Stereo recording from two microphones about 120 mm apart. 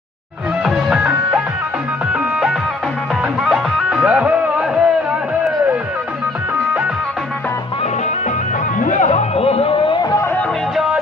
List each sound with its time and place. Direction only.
0.7 s music: 5° right (ahead or behind)
3.4 s music: 5° right (ahead or behind)
8.7 s music: 90° left; by 10.1 s 40° left (ahead or behind)
10.1 s music: 20° left (ahead or behind)